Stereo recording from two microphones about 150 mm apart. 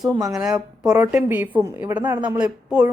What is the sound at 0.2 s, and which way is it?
Speech, 20° right (ahead or behind).